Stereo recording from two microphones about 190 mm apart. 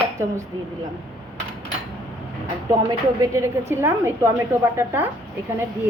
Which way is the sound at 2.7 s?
20° right (ahead or behind).